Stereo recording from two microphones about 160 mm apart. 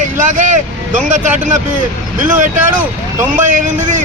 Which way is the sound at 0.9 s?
50° right (ahead or behind).